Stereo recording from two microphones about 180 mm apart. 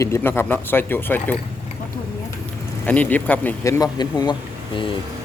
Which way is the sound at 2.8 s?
10° left (ahead or behind).